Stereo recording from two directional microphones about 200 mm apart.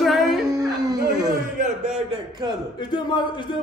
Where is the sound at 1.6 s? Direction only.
35° right (ahead or behind).